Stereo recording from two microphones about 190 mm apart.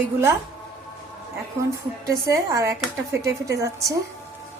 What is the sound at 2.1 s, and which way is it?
A woman's voice, 15° right (ahead or behind).